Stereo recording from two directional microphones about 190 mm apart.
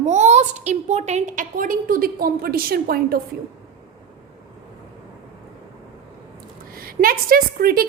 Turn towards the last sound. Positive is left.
turn(degrees=-50)  # may be behind; listen again after turning